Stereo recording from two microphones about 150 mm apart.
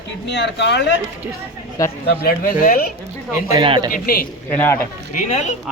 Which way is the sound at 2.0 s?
80° left.